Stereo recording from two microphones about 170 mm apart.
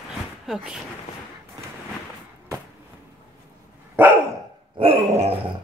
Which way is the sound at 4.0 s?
10° right (ahead or behind).